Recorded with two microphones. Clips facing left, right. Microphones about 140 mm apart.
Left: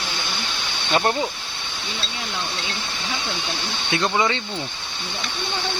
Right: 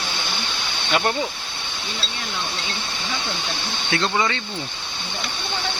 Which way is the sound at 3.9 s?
15° left (ahead or behind).